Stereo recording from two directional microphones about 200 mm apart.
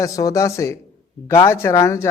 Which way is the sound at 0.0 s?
15° left (ahead or behind).